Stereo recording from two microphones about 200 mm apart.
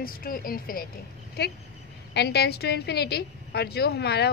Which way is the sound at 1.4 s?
50° left (ahead or behind).